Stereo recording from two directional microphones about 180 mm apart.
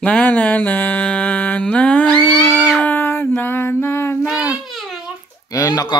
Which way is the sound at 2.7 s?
10° left (ahead or behind).